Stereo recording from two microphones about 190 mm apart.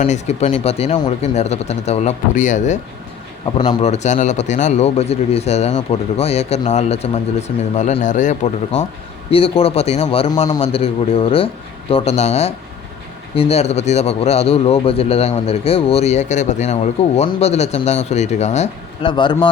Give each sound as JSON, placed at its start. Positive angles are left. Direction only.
{"t": 0.0, "sound": "speech", "side_deg": 35}
{"t": 9.3, "sound": "speech", "side_deg": 30}